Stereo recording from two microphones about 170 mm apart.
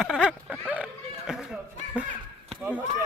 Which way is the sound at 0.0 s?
5° right (ahead or behind).